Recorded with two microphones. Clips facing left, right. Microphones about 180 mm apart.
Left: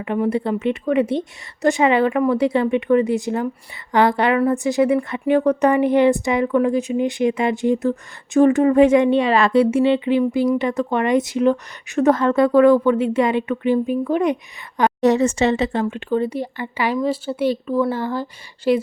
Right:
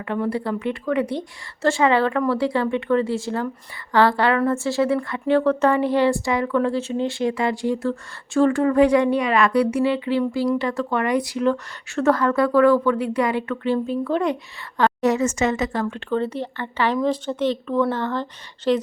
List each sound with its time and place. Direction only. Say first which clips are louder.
0.0 s a woman's voice: left 4 dB; 20° left (ahead or behind)
15.0 s a woman's voice: left 6 dB; 35° left (ahead or behind); by 18.8 s 10° left (ahead or behind)